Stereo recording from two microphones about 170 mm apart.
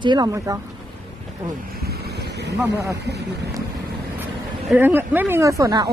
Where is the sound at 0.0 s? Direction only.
25° right (ahead or behind).